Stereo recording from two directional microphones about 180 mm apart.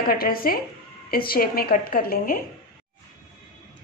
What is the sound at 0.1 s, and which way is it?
A woman's voice, 55° left (ahead or behind).